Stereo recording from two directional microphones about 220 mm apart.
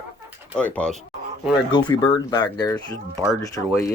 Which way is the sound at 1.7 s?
20° left (ahead or behind).